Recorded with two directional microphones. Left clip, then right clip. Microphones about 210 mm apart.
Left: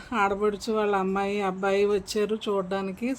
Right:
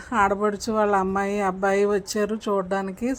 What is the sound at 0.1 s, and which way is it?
Speech, 15° right (ahead or behind).